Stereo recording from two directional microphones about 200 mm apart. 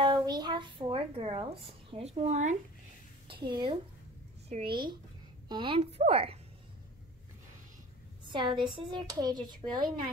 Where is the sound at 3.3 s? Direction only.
20° right (ahead or behind).